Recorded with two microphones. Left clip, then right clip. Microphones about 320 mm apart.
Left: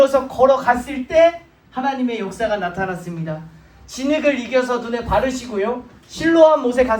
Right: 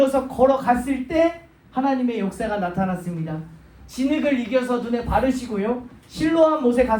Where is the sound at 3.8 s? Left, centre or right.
Left.